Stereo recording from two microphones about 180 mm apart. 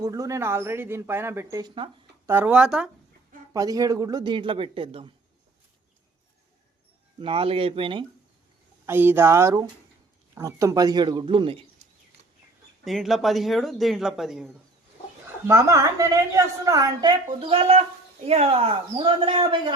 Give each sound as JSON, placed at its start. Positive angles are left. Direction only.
{"t": 0.0, "sound": "a woman's voice", "side_deg": -20}
{"t": 3.5, "sound": "speech", "side_deg": -20}
{"t": 7.2, "sound": "a man's voice", "side_deg": -30}
{"t": 8.9, "sound": "a woman's voice", "side_deg": -10}
{"t": 12.8, "sound": "speech", "side_deg": 0}
{"t": 15.4, "sound": "a woman's voice", "side_deg": -15}
{"t": 17.4, "sound": "a man's voice", "side_deg": -30}